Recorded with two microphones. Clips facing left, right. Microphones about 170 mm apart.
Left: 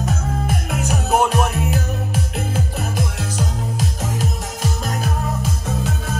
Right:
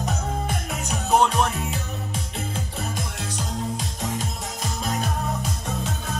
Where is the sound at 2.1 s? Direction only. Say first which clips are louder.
Left 6 dB; 75° left (ahead or behind).